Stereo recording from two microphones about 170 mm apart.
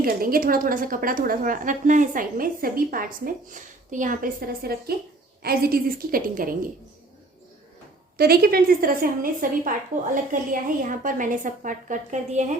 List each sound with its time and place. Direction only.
0.0 s a woman's voice: 60° right (ahead or behind)
8.2 s a woman's voice: 65° right (ahead or behind); by 12.5 s 45° right (ahead or behind)